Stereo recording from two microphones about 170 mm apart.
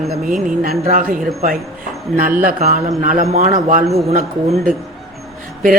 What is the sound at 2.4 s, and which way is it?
A man's voice, 45° right (ahead or behind).